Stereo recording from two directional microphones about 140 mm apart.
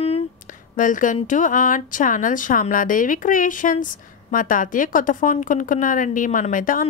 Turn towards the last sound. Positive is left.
turn(degrees=70)  # may be behind; listen again after turning